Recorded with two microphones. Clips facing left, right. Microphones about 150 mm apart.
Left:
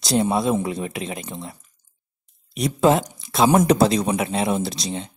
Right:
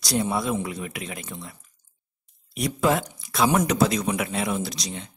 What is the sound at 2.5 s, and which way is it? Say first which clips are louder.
Speech: left 5 dB; 25° left (ahead or behind).